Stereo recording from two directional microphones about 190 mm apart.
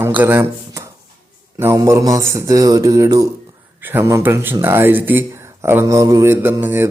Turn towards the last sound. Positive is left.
turn(degrees=-10)  # may be behind; listen again after turning